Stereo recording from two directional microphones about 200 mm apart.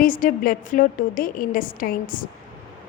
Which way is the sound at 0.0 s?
45° left (ahead or behind).